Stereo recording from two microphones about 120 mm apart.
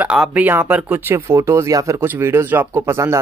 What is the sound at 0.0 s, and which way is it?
Speech, 10° right (ahead or behind).